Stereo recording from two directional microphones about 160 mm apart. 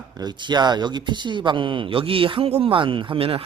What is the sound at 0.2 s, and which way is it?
Speech, 25° right (ahead or behind).